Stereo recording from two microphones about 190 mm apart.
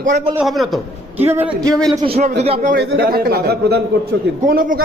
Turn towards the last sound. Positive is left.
turn(degrees=-45)  # may be behind; listen again after turning